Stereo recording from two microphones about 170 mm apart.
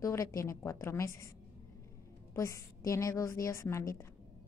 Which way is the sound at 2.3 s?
20° left (ahead or behind).